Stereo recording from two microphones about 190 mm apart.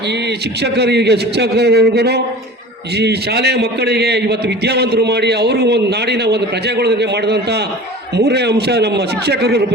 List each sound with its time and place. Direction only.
0.1 s a man's voice: 60° right (ahead or behind)